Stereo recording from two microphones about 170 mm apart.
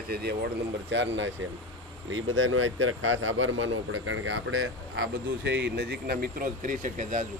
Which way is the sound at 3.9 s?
90° right.